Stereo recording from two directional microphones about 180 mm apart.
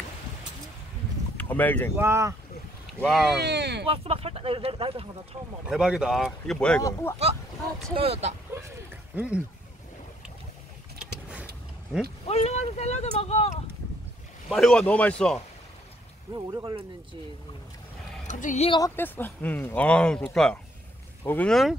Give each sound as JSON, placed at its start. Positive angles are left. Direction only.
{"t": 1.3, "sound": "speech", "side_deg": 10}
{"t": 2.0, "sound": "speech", "side_deg": -15}
{"t": 3.0, "sound": "speech", "side_deg": 0}
{"t": 3.3, "sound": "speech", "side_deg": -70}
{"t": 3.8, "sound": "speech", "side_deg": -30}
{"t": 5.7, "sound": "speech", "side_deg": -5}
{"t": 7.9, "sound": "speech", "side_deg": -35}
{"t": 9.1, "sound": "speech", "side_deg": -10}
{"t": 11.0, "sound": "vehicle", "side_deg": -5}
{"t": 12.3, "sound": "speech", "side_deg": 35}
{"t": 14.5, "sound": "speech", "side_deg": 0}
{"t": 16.3, "sound": "speech", "side_deg": -20}
{"t": 18.2, "sound": "a woman's voice", "side_deg": 45}
{"t": 18.9, "sound": "speech", "side_deg": 10}